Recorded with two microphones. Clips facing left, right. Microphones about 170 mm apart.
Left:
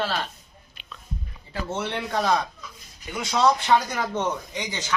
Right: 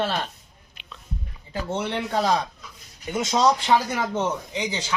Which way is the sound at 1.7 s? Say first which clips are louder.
Right 2 dB; 15° right (ahead or behind).